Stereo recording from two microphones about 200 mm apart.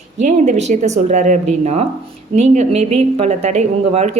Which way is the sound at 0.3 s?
35° right (ahead or behind).